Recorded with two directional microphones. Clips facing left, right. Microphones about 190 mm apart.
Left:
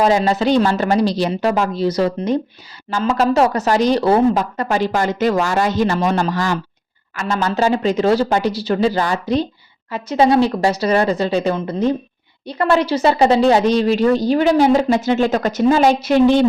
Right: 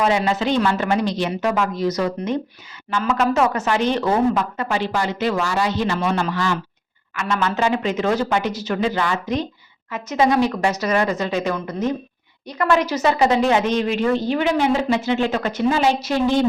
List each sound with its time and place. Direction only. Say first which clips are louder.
0.0 s a woman's voice: left 4 dB; 35° left (ahead or behind); by 16.4 s 60° left (ahead or behind)